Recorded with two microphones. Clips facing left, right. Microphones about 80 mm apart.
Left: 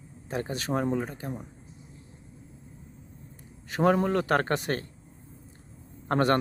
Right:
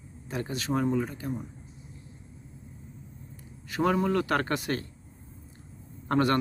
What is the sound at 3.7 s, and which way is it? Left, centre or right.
A man's voice, left.